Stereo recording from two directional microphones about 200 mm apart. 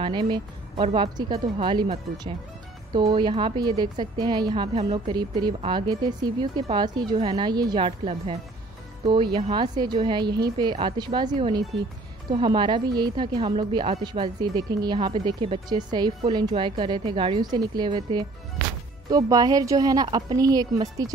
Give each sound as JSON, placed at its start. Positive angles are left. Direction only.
{"t": 0.0, "sound": "a woman's voice", "side_deg": -25}